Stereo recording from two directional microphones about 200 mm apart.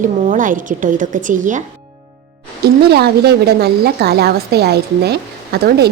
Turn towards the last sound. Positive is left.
turn(degrees=-55)  # may be behind; listen again after turning